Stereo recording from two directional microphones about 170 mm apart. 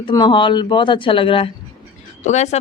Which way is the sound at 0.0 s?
25° left (ahead or behind).